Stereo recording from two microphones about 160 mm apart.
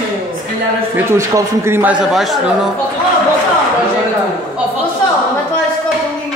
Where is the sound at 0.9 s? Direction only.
15° right (ahead or behind).